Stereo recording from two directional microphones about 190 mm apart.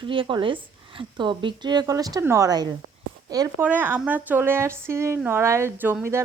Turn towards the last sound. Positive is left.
turn(degrees=-10)  # may be behind; listen again after turning